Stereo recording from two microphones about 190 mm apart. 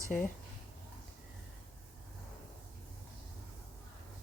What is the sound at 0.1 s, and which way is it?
Speech, 5° left (ahead or behind).